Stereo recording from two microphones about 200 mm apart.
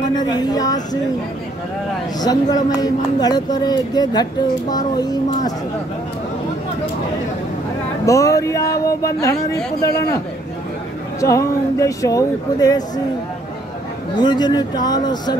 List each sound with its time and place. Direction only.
0.1 s speech: 20° left (ahead or behind)
2.1 s speech: 20° left (ahead or behind)
8.0 s speech: 15° left (ahead or behind)
11.1 s speech: 15° left (ahead or behind)
14.1 s speech: 20° left (ahead or behind)